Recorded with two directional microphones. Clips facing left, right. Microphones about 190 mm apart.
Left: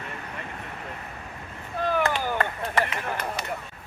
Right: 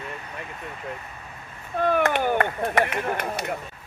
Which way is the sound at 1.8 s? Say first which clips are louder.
Right 4 dB; 60° right (ahead or behind).